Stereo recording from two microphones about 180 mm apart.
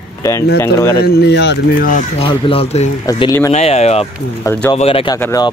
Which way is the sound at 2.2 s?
30° left (ahead or behind).